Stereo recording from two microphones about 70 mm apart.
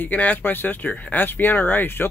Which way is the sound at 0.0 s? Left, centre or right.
Left.